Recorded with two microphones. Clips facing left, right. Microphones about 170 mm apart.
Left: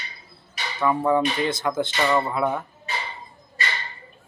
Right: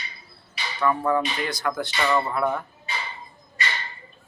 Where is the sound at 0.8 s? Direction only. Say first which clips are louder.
Left 2 dB; 20° left (ahead or behind).